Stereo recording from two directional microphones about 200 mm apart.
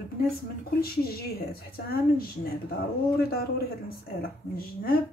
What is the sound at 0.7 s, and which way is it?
Speech, 50° left (ahead or behind).